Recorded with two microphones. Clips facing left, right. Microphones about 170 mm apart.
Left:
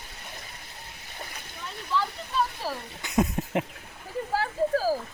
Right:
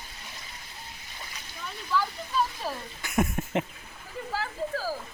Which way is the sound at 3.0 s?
20° left (ahead or behind).